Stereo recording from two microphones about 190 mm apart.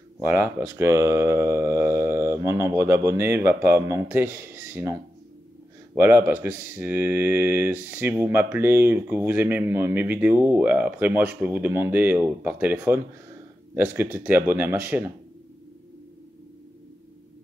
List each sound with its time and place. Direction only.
0.2 s speech: 10° right (ahead or behind)
5.9 s speech: 10° right (ahead or behind)